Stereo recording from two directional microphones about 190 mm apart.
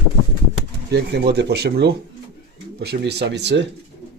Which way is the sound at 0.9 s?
60° right (ahead or behind).